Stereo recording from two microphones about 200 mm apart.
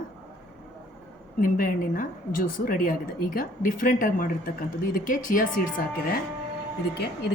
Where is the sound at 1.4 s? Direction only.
45° left (ahead or behind).